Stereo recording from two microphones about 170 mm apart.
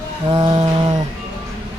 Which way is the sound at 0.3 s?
35° right (ahead or behind).